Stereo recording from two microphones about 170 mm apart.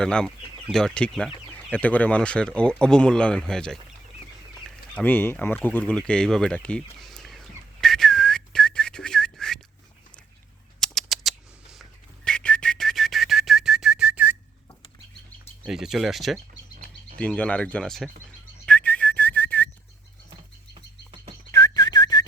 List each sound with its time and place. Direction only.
0.0 s speech: 5° left (ahead or behind)
4.6 s a sound: 10° left (ahead or behind)
10.8 s whistling: centre (ahead or behind)
15.6 s speech: 5° right (ahead or behind)
18.6 s whistling: 5° left (ahead or behind)
21.5 s whistling: 20° left (ahead or behind)